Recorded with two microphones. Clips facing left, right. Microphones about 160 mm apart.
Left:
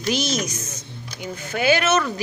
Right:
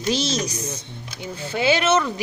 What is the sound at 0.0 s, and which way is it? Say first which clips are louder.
A woman's voice: even; 30° right (ahead or behind).